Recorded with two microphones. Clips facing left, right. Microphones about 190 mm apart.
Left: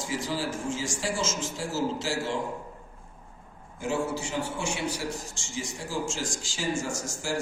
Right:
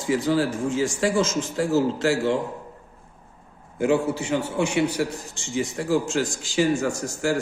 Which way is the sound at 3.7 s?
60° right (ahead or behind).